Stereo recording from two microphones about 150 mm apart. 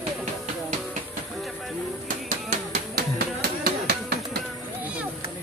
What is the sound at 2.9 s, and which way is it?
Music, 90° right.